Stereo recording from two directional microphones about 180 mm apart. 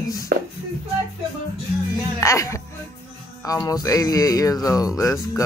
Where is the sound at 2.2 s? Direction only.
15° left (ahead or behind).